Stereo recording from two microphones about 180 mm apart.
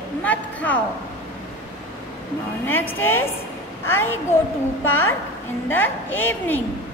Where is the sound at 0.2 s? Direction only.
10° left (ahead or behind).